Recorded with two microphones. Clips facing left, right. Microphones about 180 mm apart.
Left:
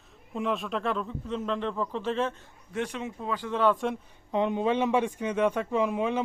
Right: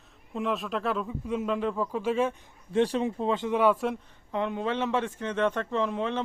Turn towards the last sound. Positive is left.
turn(degrees=10)  # may be behind; listen again after turning